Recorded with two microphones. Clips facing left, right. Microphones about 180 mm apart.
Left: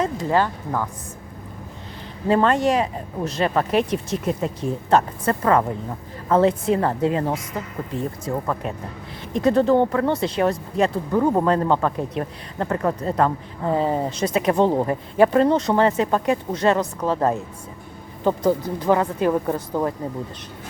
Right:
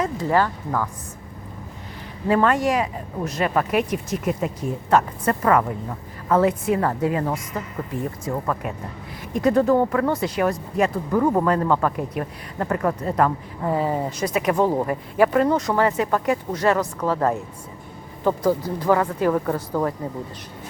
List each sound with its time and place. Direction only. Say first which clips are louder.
0.0 s speech: even; 20° left (ahead or behind)
2.3 s speech: left 1 dB; 25° left (ahead or behind)